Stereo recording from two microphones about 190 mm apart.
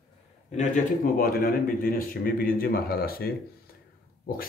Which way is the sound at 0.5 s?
45° left (ahead or behind).